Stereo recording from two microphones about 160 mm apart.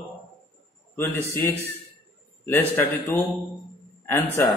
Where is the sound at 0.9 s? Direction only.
15° left (ahead or behind).